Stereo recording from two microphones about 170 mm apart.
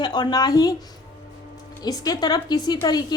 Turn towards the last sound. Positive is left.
turn(degrees=25)  # may be behind; listen again after turning